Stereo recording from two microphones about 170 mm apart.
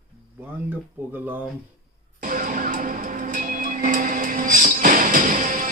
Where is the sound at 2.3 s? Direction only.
50° right (ahead or behind).